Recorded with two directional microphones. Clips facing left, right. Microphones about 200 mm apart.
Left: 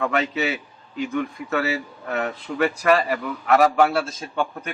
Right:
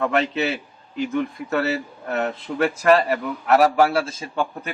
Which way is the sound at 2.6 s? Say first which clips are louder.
Right 2 dB; centre (ahead or behind).